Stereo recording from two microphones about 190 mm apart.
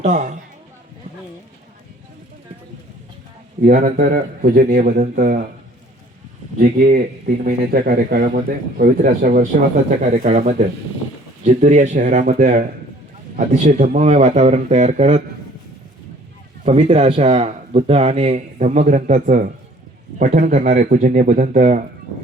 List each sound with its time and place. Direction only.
0.0 s speech: 40° right (ahead or behind)
3.6 s a man's voice: 50° right (ahead or behind)
6.6 s a man's voice: 50° right (ahead or behind); by 15.2 s 35° right (ahead or behind)
16.6 s speech: 35° right (ahead or behind)